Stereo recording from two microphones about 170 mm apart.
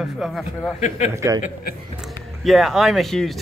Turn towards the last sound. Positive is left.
turn(degrees=0)  # may be behind; listen again after turning